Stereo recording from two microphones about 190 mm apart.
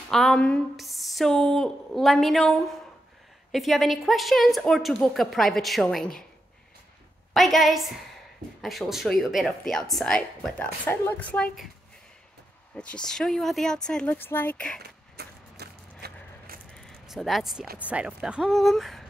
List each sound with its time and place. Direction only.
0.1 s speech: 5° left (ahead or behind)
7.3 s speech: centre (ahead or behind)
12.7 s speech: 5° left (ahead or behind)
14.8 s a sound: 60° right (ahead or behind)
16.7 s a sound: centre (ahead or behind)
17.7 s speech: 5° right (ahead or behind)